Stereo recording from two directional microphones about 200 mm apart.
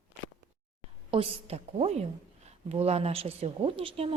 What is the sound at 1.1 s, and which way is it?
A woman's voice, 30° right (ahead or behind).